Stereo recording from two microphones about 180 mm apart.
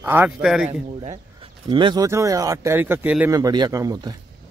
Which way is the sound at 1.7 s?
25° right (ahead or behind).